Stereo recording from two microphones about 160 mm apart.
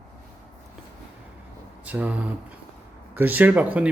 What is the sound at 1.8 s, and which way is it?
Speech, 10° right (ahead or behind).